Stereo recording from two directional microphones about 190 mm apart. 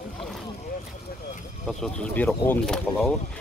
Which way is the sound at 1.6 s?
5° left (ahead or behind).